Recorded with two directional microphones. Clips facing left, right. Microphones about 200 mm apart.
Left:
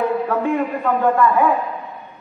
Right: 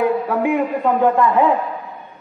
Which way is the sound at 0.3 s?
15° right (ahead or behind).